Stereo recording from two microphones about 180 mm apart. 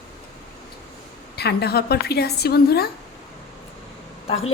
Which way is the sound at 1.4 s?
65° left (ahead or behind).